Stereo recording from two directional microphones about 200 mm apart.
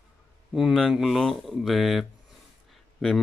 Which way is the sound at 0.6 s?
Centre (ahead or behind).